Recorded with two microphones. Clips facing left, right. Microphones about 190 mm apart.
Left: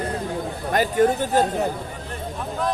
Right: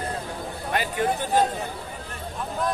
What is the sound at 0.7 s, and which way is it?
Speech, 40° left (ahead or behind).